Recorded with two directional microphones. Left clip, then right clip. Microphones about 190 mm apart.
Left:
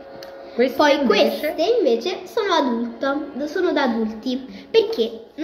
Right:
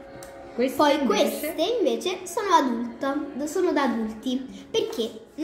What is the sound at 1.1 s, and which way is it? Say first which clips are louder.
Speech: left 6 dB; 25° left (ahead or behind).